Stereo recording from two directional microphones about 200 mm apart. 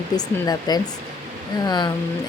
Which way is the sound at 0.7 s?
20° left (ahead or behind).